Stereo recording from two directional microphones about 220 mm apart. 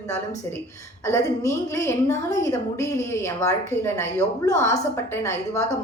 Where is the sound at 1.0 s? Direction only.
15° left (ahead or behind).